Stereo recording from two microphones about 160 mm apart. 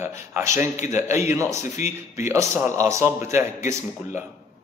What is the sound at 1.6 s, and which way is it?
Speech, 45° left (ahead or behind).